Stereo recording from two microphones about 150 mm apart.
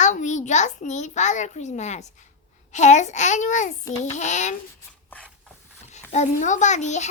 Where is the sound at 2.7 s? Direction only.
50° left (ahead or behind).